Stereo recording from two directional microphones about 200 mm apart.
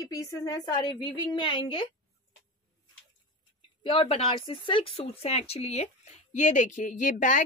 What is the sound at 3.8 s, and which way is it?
Speech, 25° left (ahead or behind).